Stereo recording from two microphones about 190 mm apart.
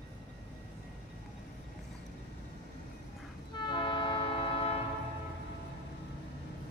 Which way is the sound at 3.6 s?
25° left (ahead or behind).